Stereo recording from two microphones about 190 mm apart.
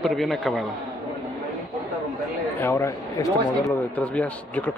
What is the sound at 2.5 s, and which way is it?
A man's voice, 15° left (ahead or behind).